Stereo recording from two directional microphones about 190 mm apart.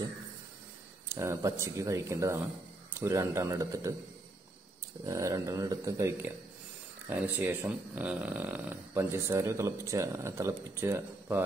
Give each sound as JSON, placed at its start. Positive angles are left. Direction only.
{"t": 1.0, "sound": "speech", "side_deg": -15}
{"t": 5.0, "sound": "speech", "side_deg": -15}